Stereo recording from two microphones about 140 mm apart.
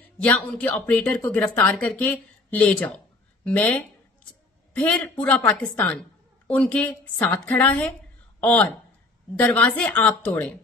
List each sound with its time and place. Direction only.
0.2 s speech: 10° left (ahead or behind)